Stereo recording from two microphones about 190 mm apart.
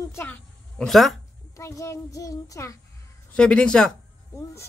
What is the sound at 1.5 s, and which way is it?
A child's voice, 15° left (ahead or behind).